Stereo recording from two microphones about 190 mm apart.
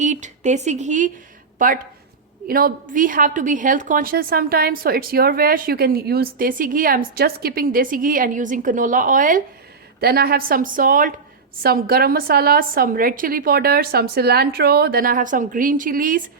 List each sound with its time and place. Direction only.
0.0 s a woman's voice: 40° right (ahead or behind)
10.0 s a woman's voice: 55° right (ahead or behind)